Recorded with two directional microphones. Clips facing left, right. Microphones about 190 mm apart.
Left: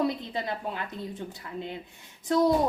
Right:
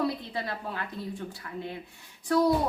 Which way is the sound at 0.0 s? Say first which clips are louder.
Left 2 dB; 20° left (ahead or behind).